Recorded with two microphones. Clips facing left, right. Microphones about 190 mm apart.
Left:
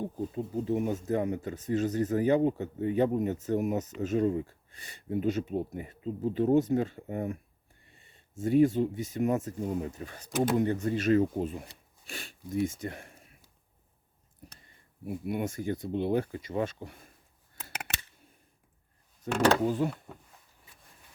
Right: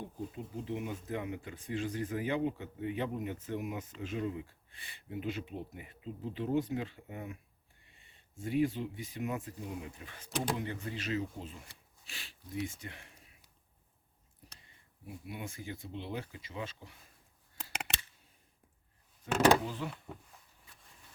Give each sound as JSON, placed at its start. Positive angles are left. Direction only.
{"t": 0.0, "sound": "speech", "side_deg": 40}
{"t": 15.0, "sound": "speech", "side_deg": 55}
{"t": 17.7, "sound": "a sound", "side_deg": 5}
{"t": 19.3, "sound": "speech", "side_deg": 45}